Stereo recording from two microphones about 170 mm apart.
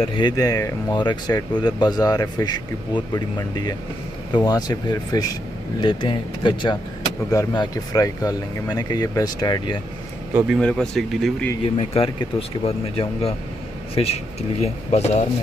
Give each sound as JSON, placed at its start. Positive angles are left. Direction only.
{"t": 0.1, "sound": "speech", "side_deg": 25}
{"t": 10.3, "sound": "speech", "side_deg": -5}
{"t": 11.8, "sound": "speech", "side_deg": 35}